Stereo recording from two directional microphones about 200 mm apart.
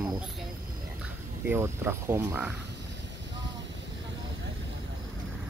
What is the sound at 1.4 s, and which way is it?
Speech, 10° right (ahead or behind).